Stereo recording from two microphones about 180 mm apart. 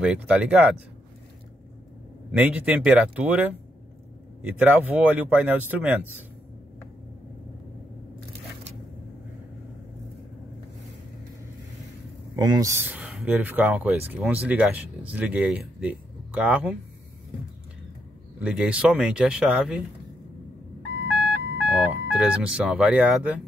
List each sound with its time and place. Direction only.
0.0 s speech: 5° right (ahead or behind)
2.3 s speech: 10° right (ahead or behind)
12.4 s speech: 20° right (ahead or behind)
18.4 s speech: 5° right (ahead or behind)
21.2 s a sound: 5° right (ahead or behind)